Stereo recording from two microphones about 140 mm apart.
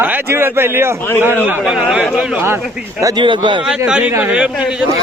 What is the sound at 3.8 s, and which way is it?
Speech, 10° right (ahead or behind).